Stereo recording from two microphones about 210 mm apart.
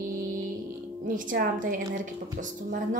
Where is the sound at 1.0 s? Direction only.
40° right (ahead or behind).